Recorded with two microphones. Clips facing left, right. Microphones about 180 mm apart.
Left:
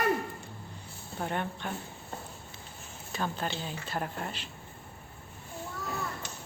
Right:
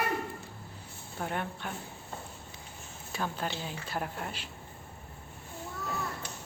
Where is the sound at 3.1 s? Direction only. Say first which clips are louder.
Left 1 dB; 5° right (ahead or behind).